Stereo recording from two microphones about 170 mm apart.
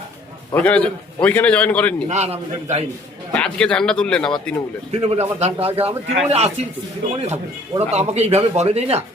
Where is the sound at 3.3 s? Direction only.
5° left (ahead or behind).